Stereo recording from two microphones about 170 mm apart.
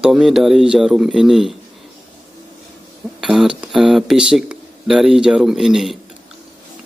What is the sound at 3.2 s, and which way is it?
Speech, 5° right (ahead or behind).